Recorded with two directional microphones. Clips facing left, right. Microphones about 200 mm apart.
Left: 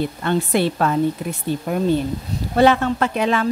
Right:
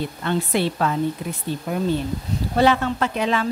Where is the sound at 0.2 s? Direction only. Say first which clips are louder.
Left 2 dB; 50° left (ahead or behind).